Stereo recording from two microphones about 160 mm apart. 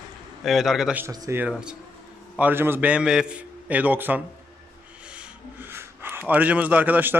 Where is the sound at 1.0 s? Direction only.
15° right (ahead or behind).